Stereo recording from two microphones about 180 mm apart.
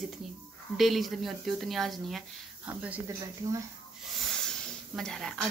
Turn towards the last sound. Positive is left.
turn(degrees=5)  # may be behind; listen again after turning